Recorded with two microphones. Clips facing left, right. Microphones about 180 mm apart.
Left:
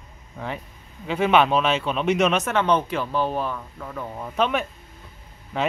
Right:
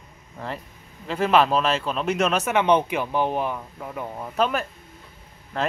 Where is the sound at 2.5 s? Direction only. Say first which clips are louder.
Right 2 dB; 15° right (ahead or behind).